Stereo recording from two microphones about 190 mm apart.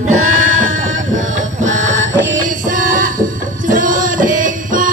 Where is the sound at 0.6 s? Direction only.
45° right (ahead or behind).